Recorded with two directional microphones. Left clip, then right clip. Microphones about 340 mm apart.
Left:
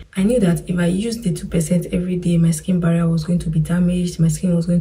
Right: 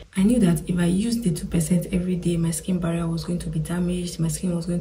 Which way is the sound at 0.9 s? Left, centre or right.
Right.